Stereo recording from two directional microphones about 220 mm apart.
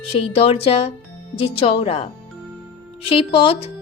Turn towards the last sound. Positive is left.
turn(degrees=25)  # may be behind; listen again after turning